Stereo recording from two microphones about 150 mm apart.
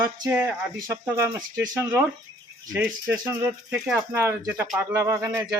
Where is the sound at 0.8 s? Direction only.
20° right (ahead or behind).